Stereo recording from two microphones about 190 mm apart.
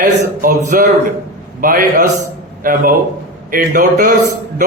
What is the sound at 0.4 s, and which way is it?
Speech, 45° right (ahead or behind).